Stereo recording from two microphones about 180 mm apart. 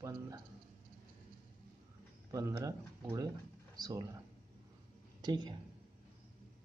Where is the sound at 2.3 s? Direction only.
20° right (ahead or behind).